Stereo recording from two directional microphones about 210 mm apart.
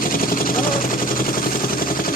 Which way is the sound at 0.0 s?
45° left (ahead or behind).